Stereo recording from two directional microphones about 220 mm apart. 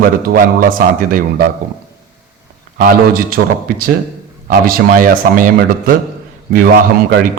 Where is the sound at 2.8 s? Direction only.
40° right (ahead or behind).